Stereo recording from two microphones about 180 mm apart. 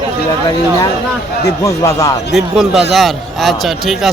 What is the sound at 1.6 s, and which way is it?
Speech, 20° left (ahead or behind).